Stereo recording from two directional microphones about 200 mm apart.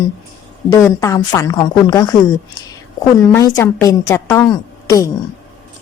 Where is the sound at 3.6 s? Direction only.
15° left (ahead or behind).